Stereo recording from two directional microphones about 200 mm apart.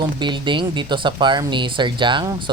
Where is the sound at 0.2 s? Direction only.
25° right (ahead or behind).